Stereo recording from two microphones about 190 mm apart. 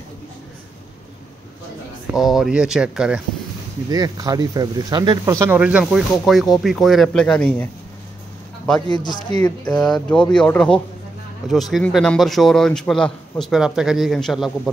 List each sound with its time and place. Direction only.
2.1 s speech: centre (ahead or behind)
3.9 s speech: 20° right (ahead or behind); by 7.7 s 5° left (ahead or behind)
8.8 s speech: 20° left (ahead or behind)
9.4 s speech: 5° left (ahead or behind)